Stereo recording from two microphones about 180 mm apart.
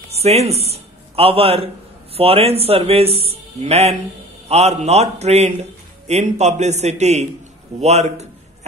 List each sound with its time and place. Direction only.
0.1 s a man's voice: 35° right (ahead or behind)